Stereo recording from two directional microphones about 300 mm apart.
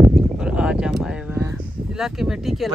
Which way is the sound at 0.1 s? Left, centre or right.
Centre.